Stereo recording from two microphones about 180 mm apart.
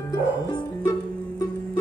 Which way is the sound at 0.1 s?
20° left (ahead or behind).